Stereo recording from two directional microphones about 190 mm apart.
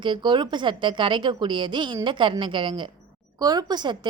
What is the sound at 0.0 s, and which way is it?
A woman's voice, 25° right (ahead or behind).